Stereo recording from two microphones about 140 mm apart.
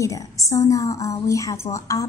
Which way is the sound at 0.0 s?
25° left (ahead or behind).